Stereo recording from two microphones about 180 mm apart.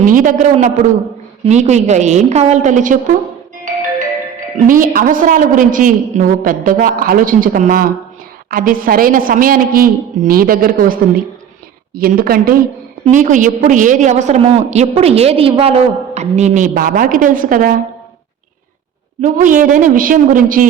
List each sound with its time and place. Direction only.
0.0 s a man's voice: 50° right (ahead or behind)
4.5 s a woman's voice: 50° right (ahead or behind)
11.9 s a woman's voice: 55° right (ahead or behind)
19.2 s a woman's voice: 45° right (ahead or behind)